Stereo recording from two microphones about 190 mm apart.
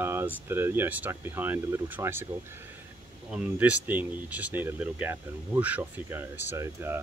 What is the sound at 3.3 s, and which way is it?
Speech, 5° right (ahead or behind).